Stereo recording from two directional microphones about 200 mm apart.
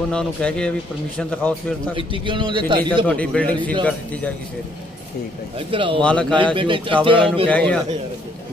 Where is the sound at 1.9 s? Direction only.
25° right (ahead or behind).